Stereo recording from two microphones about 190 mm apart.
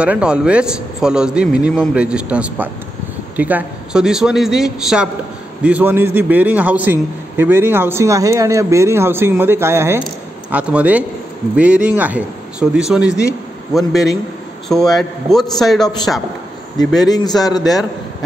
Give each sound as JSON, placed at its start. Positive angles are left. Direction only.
{"t": 0.0, "sound": "a man's voice", "side_deg": -5}
{"t": 16.7, "sound": "a man's voice", "side_deg": 20}